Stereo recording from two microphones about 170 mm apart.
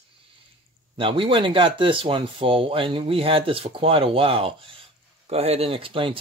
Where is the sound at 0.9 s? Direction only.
30° right (ahead or behind).